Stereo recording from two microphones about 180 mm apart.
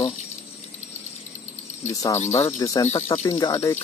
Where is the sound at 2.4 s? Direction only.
15° left (ahead or behind).